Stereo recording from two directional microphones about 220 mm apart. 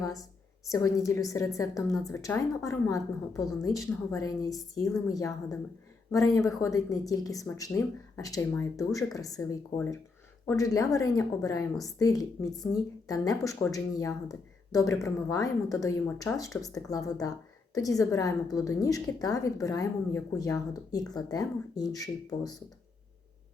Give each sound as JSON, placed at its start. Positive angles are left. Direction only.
{"t": 0.0, "sound": "a woman's voice", "side_deg": 15}